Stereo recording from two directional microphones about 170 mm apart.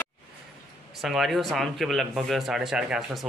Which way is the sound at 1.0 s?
Centre (ahead or behind).